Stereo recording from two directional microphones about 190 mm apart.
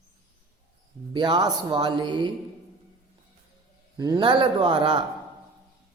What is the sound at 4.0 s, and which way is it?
A woman's voice, 20° right (ahead or behind).